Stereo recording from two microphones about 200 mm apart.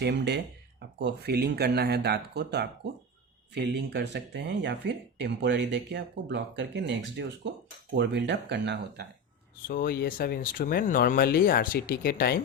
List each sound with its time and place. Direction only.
0.0 s speech: 60° right (ahead or behind)
9.6 s speech: 45° left (ahead or behind)